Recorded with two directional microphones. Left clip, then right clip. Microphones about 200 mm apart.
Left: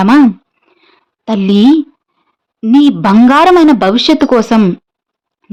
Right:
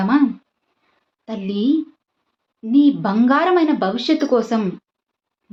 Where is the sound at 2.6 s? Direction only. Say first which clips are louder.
Left 8 dB; 55° left (ahead or behind).